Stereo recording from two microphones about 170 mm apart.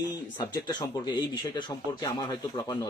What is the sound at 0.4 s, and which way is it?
Speech, 25° left (ahead or behind).